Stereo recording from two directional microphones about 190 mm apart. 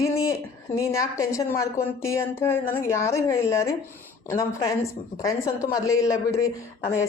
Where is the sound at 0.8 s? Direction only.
15° left (ahead or behind).